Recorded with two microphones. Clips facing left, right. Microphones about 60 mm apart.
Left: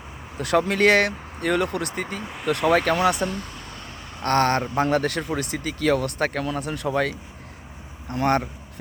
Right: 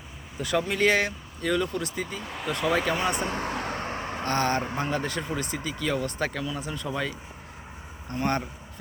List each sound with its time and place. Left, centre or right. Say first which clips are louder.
0.3 s speech: left 5 dB; left
2.2 s speech: left 1 dB; centre
2.7 s speech: left 6 dB; left
3.2 s vehicle: even; right
4.2 s speech: left 6 dB; left
8.1 s speech: left 6 dB; left